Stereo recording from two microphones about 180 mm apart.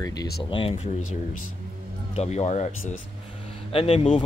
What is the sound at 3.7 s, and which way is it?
Speech, 35° left (ahead or behind).